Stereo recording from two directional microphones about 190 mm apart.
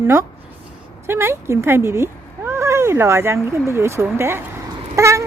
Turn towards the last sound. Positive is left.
turn(degrees=-15)  # may be behind; listen again after turning